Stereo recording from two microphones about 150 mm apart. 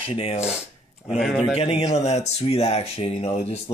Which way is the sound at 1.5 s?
45° left (ahead or behind).